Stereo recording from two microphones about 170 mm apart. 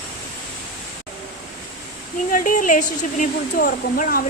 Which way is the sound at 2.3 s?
50° left (ahead or behind).